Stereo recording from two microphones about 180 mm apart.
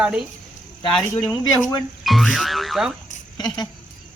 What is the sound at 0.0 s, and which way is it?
Speech, 5° right (ahead or behind).